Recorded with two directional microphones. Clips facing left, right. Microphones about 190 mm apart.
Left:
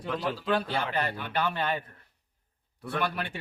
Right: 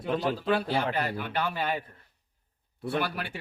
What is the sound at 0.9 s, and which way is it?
Speech, 5° right (ahead or behind).